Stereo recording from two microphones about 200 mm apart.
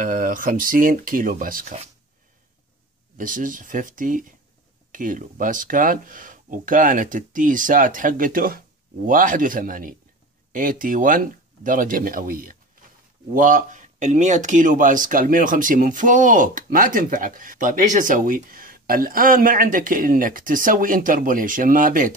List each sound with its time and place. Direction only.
0.0 s speech: 40° right (ahead or behind)
3.2 s speech: 40° right (ahead or behind)